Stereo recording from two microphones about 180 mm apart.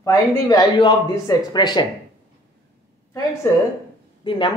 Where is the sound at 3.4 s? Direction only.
15° left (ahead or behind).